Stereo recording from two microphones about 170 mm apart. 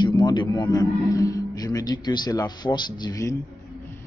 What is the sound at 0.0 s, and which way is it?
A man's voice, 25° left (ahead or behind).